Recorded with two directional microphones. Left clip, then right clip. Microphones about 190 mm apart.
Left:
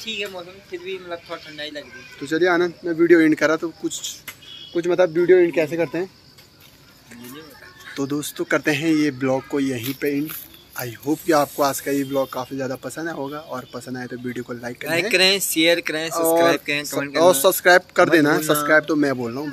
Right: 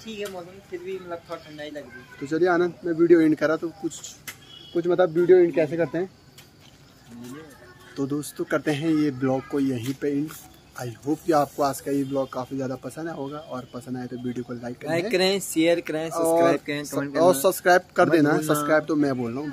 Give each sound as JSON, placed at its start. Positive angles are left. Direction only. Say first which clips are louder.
{"t": 0.0, "sound": "speech", "louder": "left 6 dB", "side_deg": -15}
{"t": 2.2, "sound": "speech", "louder": "left 3 dB", "side_deg": -5}
{"t": 4.7, "sound": "speech", "louder": "left 3 dB", "side_deg": 0}
{"t": 7.9, "sound": "speech", "louder": "left 3 dB", "side_deg": 0}
{"t": 12.4, "sound": "speech", "louder": "left 3 dB", "side_deg": 0}
{"t": 13.1, "sound": "speech", "louder": "left 4 dB", "side_deg": 15}
{"t": 13.9, "sound": "speech", "louder": "left 2 dB", "side_deg": 0}
{"t": 14.9, "sound": "speech", "louder": "left 5 dB", "side_deg": -20}
{"t": 16.1, "sound": "speech", "louder": "left 3 dB", "side_deg": -5}
{"t": 16.5, "sound": "speech", "louder": "left 5 dB", "side_deg": -15}
{"t": 17.2, "sound": "speech", "louder": "left 4 dB", "side_deg": 0}